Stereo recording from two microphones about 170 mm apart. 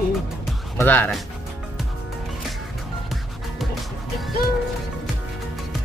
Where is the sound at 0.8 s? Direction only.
10° left (ahead or behind).